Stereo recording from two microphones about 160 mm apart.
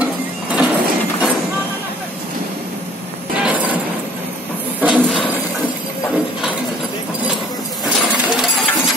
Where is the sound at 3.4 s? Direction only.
10° right (ahead or behind).